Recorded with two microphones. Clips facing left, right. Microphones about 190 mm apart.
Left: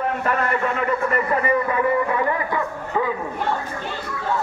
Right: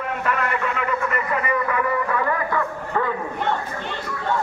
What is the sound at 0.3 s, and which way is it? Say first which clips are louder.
A man's voice: even; 35° left (ahead or behind).